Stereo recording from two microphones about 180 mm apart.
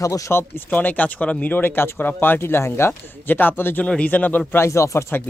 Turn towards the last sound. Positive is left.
turn(degrees=15)  # may be behind; listen again after turning